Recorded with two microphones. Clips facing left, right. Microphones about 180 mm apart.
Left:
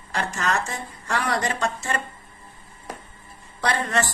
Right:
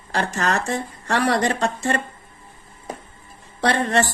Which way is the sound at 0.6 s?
35° right (ahead or behind).